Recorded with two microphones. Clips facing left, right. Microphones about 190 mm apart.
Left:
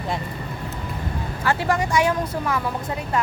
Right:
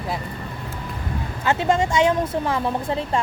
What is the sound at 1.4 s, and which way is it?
Speech, 20° right (ahead or behind).